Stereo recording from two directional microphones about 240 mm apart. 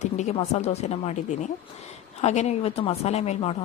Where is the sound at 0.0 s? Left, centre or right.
Left.